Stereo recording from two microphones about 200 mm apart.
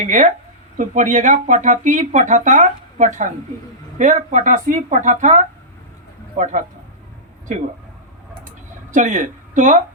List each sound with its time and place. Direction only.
0.0 s speech: 40° right (ahead or behind)
8.9 s speech: 40° right (ahead or behind)